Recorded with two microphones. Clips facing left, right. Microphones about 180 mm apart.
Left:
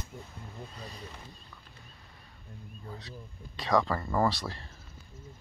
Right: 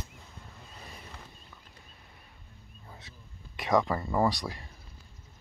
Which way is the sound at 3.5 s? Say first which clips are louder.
Right 1 dB; 20° right (ahead or behind).